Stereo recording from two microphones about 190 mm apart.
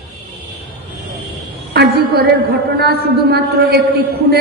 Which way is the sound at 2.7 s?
55° right (ahead or behind).